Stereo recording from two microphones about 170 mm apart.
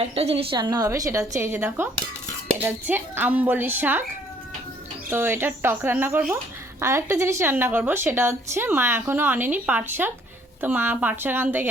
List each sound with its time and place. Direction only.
0.1 s a woman's voice: 35° right (ahead or behind); by 4.0 s 10° right (ahead or behind)
5.1 s speech: 10° right (ahead or behind)